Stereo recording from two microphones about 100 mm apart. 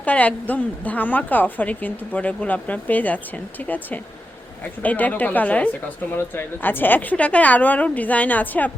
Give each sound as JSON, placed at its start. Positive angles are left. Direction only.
{"t": 0.0, "sound": "a woman's voice", "side_deg": 15}